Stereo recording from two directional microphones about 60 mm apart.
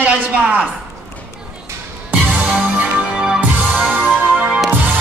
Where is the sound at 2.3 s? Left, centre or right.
Right.